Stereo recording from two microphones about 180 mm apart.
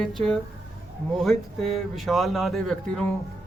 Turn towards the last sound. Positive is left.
turn(degrees=0)  # may be behind; listen again after turning